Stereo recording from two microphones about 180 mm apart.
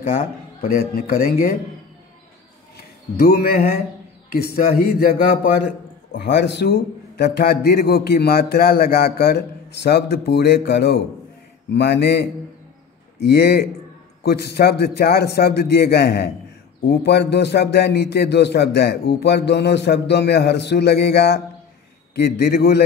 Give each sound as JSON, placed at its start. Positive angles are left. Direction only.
{"t": 0.7, "sound": "speech", "side_deg": 55}
{"t": 3.2, "sound": "a man's voice", "side_deg": 60}
{"t": 6.1, "sound": "a man's voice", "side_deg": 70}